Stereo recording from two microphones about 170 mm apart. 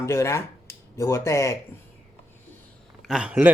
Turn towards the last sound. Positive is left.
turn(degrees=-5)  # may be behind; listen again after turning